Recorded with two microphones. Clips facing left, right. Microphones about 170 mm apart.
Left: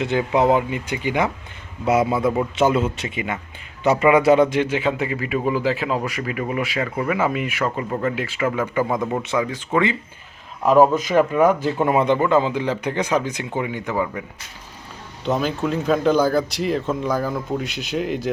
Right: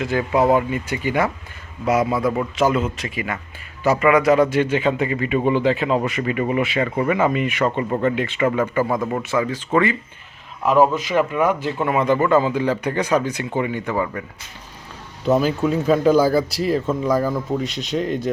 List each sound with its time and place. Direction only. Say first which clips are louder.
0.0 s a man's voice: even; 20° left (ahead or behind)
4.4 s speech: right 2 dB; 10° left (ahead or behind)
9.2 s a man's voice: right 1 dB; 15° left (ahead or behind)
10.7 s speech: left 2 dB; 40° left (ahead or behind)
12.1 s speech: right 1 dB; 15° left (ahead or behind)
15.2 s speech: right 4 dB; 5° right (ahead or behind)